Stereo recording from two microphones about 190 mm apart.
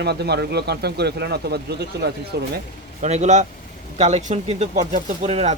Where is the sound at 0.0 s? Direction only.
60° right (ahead or behind).